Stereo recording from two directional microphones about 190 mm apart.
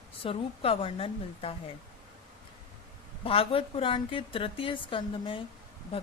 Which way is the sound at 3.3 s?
30° left (ahead or behind).